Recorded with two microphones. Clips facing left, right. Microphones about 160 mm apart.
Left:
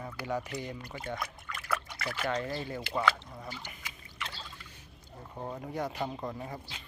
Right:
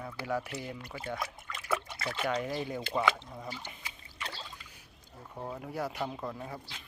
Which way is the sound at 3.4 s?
30° right (ahead or behind).